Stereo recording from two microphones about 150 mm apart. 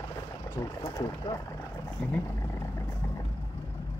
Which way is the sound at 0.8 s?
30° left (ahead or behind).